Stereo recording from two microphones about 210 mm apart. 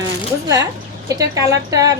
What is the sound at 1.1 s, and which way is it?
Speech, 15° right (ahead or behind).